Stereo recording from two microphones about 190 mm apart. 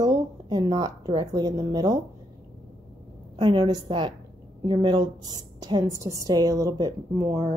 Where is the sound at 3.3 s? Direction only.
25° right (ahead or behind).